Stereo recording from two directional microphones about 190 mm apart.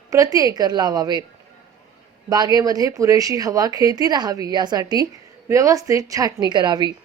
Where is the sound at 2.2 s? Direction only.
20° right (ahead or behind).